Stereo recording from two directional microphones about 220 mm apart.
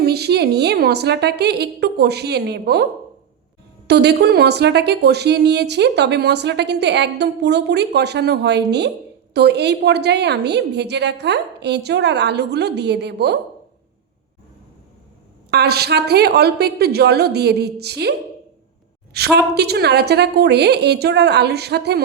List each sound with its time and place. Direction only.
0.0 s a woman's voice: 45° right (ahead or behind)
3.8 s a woman's voice: 50° right (ahead or behind)
15.4 s a woman's voice: 45° right (ahead or behind)
19.1 s a woman's voice: 45° right (ahead or behind)